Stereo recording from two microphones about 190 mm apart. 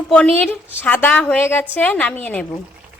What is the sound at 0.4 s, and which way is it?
A woman's voice, 10° left (ahead or behind).